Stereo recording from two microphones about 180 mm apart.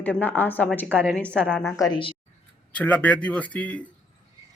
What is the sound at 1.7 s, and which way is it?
Speech, 20° left (ahead or behind).